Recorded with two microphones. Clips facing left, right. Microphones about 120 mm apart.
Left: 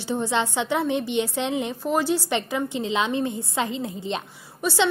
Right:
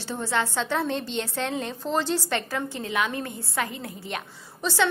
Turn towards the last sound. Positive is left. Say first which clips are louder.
# left 2 dB
turn(degrees=15)  # may be behind; listen again after turning